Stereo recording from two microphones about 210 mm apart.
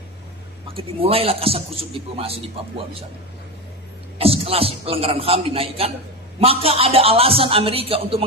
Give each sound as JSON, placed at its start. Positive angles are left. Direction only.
{"t": 0.8, "sound": "a man's voice", "side_deg": -25}
{"t": 4.2, "sound": "a man's voice", "side_deg": -25}